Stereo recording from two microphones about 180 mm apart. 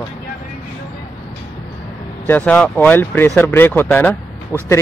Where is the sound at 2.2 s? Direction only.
10° left (ahead or behind).